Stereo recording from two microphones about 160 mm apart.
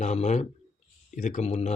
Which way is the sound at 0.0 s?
45° left (ahead or behind).